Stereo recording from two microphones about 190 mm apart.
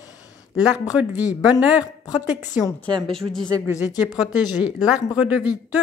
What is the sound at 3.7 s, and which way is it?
Speech, 20° left (ahead or behind).